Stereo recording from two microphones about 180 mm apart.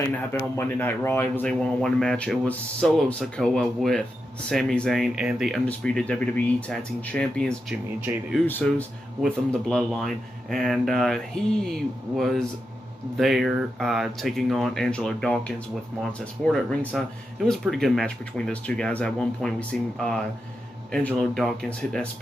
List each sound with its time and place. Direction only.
0.2 s speech: 15° left (ahead or behind)
8.1 s speech: 15° right (ahead or behind)
8.5 s speech: 10° left (ahead or behind)
20.9 s speech: 5° left (ahead or behind)